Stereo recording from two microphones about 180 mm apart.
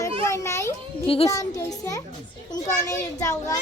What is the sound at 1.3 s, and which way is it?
A child's voice, 15° left (ahead or behind).